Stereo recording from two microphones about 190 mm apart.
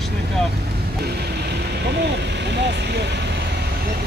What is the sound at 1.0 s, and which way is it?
Vehicle, 60° right (ahead or behind).